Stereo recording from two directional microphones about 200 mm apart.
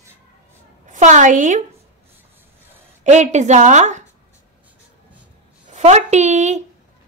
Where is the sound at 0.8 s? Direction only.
40° right (ahead or behind).